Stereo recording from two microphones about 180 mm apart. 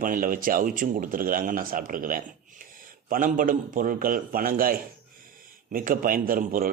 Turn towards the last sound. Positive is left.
turn(degrees=-50)  # may be behind; listen again after turning